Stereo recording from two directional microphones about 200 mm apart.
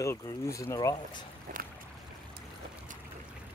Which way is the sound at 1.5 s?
45° right (ahead or behind).